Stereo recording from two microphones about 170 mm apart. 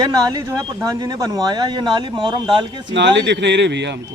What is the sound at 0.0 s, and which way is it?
Speech, 20° right (ahead or behind).